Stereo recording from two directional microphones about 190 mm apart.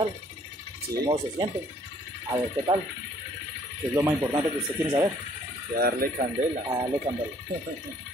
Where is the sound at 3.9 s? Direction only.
20° right (ahead or behind).